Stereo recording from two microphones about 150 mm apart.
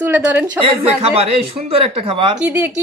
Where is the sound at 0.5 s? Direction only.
40° right (ahead or behind).